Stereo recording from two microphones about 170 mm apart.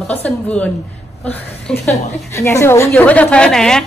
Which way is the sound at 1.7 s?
5° left (ahead or behind).